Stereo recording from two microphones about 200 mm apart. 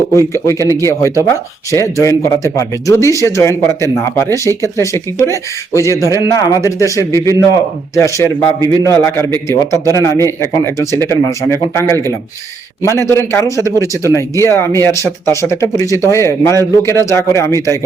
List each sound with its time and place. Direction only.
0.1 s speech: 15° left (ahead or behind)